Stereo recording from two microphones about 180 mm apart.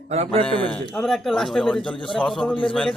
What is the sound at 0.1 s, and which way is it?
Speech, 35° right (ahead or behind).